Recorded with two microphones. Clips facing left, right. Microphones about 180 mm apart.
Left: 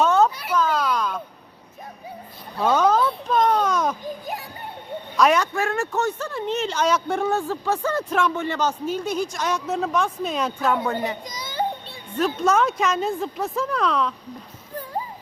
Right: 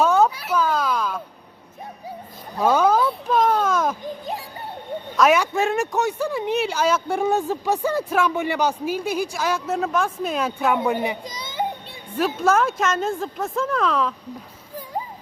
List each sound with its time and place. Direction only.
0.0 s a sound: 10° right (ahead or behind)
2.6 s a sound: 10° right (ahead or behind)
5.1 s a woman's voice: 5° right (ahead or behind)
5.5 s speech: 20° right (ahead or behind); by 7.3 s 5° right (ahead or behind)
7.3 s speech: 15° right (ahead or behind)
11.2 s children playing: 30° right (ahead or behind)
11.9 s a woman's voice: 5° right (ahead or behind)